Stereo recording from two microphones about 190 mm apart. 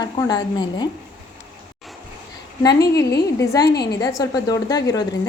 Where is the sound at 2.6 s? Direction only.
20° left (ahead or behind).